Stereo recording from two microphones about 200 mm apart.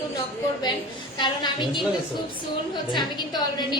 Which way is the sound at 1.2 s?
20° left (ahead or behind).